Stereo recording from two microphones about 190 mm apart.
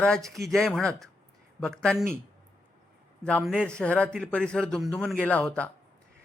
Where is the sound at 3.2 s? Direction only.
5° left (ahead or behind).